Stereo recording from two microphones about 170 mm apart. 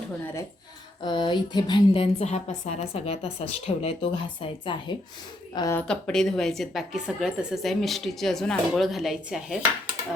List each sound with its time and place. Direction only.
1.0 s a woman's voice: 25° left (ahead or behind)
5.5 s speech: 20° left (ahead or behind)
5.9 s a woman's voice: 5° left (ahead or behind)